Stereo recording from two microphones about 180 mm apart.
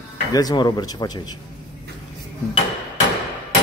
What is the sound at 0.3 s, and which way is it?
Speech, 20° left (ahead or behind).